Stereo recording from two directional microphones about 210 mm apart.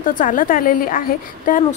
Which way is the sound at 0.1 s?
40° left (ahead or behind).